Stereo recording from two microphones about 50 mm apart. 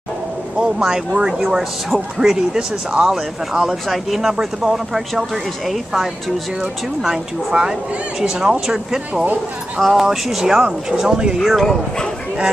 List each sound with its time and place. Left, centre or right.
0.6 s speech: centre
7.0 s speech: centre
8.5 s speech: centre
11.3 s speech: centre